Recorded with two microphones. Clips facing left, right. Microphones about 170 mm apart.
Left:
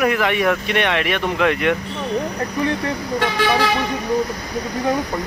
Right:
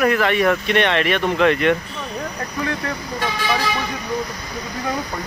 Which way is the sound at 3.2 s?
75° left (ahead or behind).